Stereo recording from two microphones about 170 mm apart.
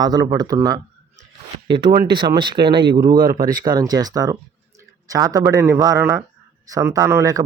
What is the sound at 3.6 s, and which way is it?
Speech, 25° right (ahead or behind).